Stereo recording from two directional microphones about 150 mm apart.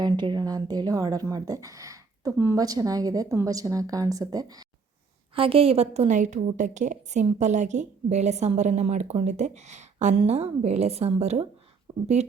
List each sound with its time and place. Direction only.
0.0 s speech: 30° right (ahead or behind)
5.3 s a woman's voice: 35° right (ahead or behind)